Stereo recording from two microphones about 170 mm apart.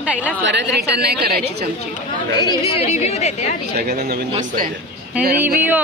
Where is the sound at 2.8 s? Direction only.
40° left (ahead or behind).